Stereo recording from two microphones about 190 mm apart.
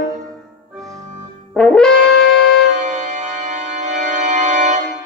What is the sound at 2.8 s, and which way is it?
Organ, 40° right (ahead or behind).